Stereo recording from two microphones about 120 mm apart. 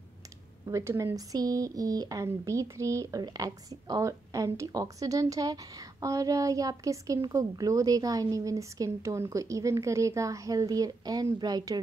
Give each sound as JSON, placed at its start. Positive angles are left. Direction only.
{"t": 0.7, "sound": "speech", "side_deg": -25}